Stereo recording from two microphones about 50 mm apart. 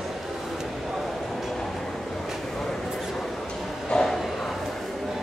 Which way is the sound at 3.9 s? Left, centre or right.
Centre.